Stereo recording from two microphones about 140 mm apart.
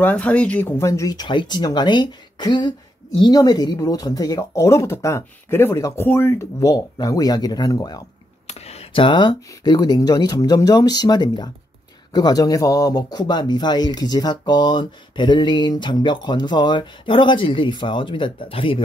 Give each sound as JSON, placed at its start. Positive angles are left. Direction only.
{"t": 0.0, "sound": "speech", "side_deg": 10}
{"t": 8.5, "sound": "speech", "side_deg": 50}